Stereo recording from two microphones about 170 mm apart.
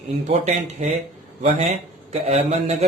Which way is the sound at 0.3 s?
40° right (ahead or behind).